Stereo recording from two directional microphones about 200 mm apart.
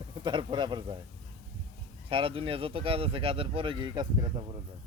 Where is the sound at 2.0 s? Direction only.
25° right (ahead or behind).